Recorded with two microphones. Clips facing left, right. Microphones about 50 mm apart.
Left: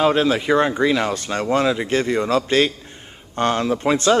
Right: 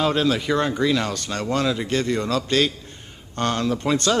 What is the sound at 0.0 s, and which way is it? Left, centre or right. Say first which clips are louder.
Speech: left 4 dB; left.